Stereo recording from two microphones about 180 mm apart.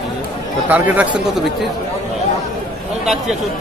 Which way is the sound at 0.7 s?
10° right (ahead or behind).